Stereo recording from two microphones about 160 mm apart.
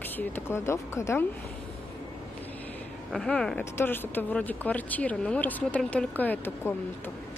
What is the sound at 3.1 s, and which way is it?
Speech, 5° left (ahead or behind).